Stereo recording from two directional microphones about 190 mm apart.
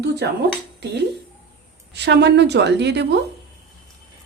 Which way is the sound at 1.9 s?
65° right (ahead or behind).